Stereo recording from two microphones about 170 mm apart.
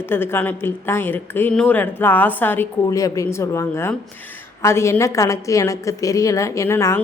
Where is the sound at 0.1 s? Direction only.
15° left (ahead or behind).